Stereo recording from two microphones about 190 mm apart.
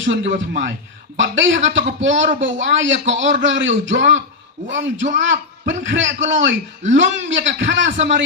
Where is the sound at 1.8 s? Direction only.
40° right (ahead or behind).